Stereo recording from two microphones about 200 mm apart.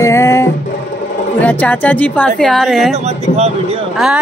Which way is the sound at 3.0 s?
30° right (ahead or behind).